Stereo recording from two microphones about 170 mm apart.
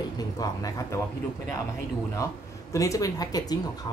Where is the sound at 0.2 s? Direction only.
20° left (ahead or behind).